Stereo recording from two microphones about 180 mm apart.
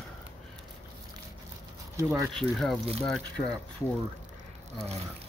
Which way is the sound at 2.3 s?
Centre (ahead or behind).